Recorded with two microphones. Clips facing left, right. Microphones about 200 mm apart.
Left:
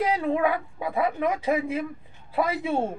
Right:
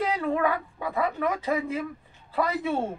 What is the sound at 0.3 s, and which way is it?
A woman's voice, 15° left (ahead or behind).